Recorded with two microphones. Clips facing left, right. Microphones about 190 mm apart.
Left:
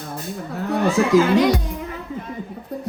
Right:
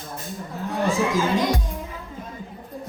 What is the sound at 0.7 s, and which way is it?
Music, 65° left (ahead or behind).